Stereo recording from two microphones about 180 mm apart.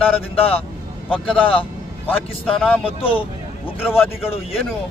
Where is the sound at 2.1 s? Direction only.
10° left (ahead or behind).